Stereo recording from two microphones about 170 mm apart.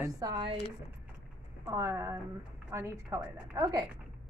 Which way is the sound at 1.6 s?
15° right (ahead or behind).